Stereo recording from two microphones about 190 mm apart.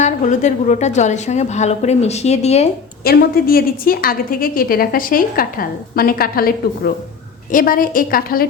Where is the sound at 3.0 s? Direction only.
50° left (ahead or behind).